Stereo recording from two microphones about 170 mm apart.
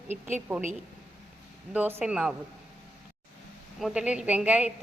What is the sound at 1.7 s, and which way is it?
Speech, 10° right (ahead or behind).